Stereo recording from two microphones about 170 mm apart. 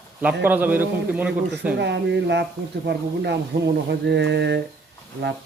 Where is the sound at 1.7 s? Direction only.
90° right.